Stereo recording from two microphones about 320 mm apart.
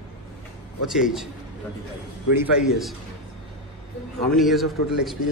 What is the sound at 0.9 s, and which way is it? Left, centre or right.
Speech, centre.